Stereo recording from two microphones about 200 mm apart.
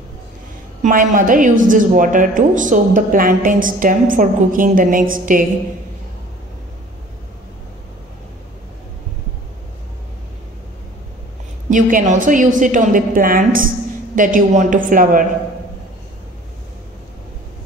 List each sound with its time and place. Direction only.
0.8 s a woman's voice: 40° right (ahead or behind)
11.7 s a woman's voice: 40° right (ahead or behind)